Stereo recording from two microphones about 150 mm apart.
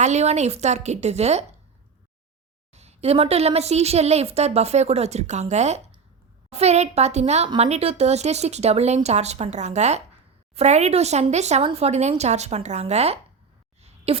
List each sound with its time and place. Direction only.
0.0 s a woman's voice: 50° right (ahead or behind)
2.7 s a woman's voice: 45° right (ahead or behind)
13.8 s a sound: 40° right (ahead or behind)